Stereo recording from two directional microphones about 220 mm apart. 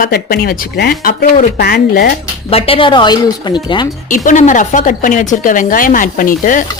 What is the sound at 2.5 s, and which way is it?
Speech, 25° left (ahead or behind).